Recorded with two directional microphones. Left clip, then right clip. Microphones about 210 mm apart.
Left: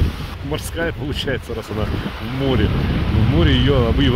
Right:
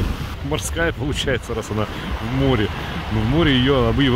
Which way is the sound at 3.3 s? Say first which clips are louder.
Right 1 dB; 15° right (ahead or behind).